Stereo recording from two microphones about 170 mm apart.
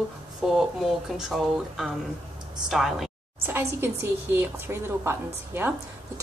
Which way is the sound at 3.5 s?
15° right (ahead or behind).